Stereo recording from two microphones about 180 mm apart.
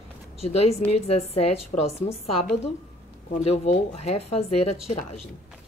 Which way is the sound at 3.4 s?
40° left (ahead or behind).